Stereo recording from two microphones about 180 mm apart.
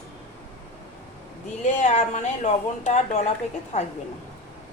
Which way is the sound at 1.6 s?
40° left (ahead or behind).